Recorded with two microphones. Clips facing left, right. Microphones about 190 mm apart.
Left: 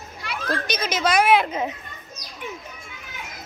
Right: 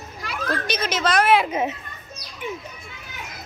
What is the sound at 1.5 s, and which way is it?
Speech, 20° right (ahead or behind).